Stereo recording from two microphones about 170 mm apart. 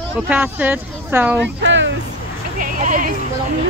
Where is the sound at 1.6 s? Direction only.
90° right.